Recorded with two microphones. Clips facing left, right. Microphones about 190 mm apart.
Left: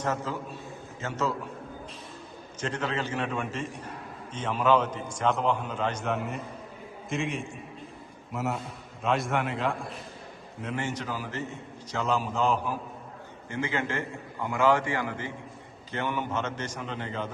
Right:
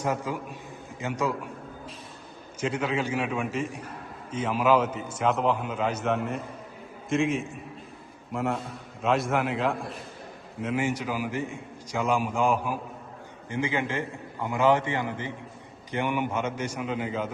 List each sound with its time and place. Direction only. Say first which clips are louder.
0.0 s a man's voice: right 2 dB; 15° right (ahead or behind)
2.6 s a man's voice: right 3 dB; 10° right (ahead or behind)